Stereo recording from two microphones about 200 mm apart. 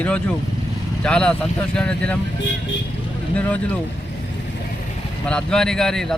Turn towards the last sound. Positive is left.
turn(degrees=5)  # may be behind; listen again after turning